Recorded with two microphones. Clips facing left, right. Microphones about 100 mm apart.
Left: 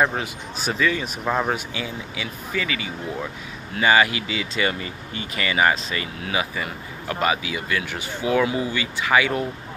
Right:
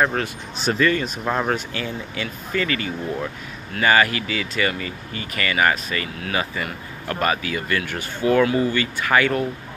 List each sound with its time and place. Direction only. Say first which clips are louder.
0.0 s speech: right 1 dB; 10° left (ahead or behind)